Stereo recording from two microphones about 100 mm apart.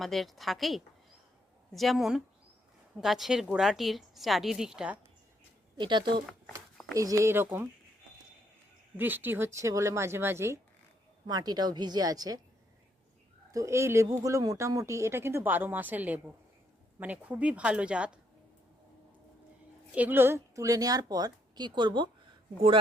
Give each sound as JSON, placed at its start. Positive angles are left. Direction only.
{"t": 0.0, "sound": "a woman's voice", "side_deg": 0}
{"t": 5.8, "sound": "speech", "side_deg": -50}
{"t": 6.9, "sound": "speech", "side_deg": -35}
{"t": 9.0, "sound": "speech", "side_deg": -20}
{"t": 11.3, "sound": "a woman's voice", "side_deg": -40}
{"t": 13.5, "sound": "a woman's voice", "side_deg": -30}
{"t": 19.9, "sound": "a woman's voice", "side_deg": -15}